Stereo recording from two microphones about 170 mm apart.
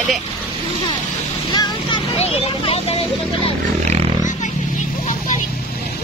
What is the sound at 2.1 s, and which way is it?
Vehicle, 40° left (ahead or behind).